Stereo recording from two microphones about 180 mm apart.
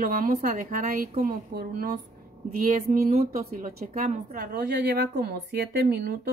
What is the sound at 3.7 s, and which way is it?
A woman's voice, 60° right (ahead or behind).